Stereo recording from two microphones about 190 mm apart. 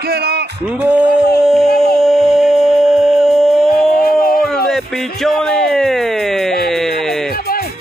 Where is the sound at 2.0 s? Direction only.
Centre (ahead or behind).